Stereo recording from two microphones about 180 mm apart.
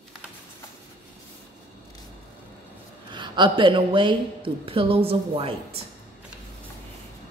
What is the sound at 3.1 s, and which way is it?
A woman's voice, 25° right (ahead or behind).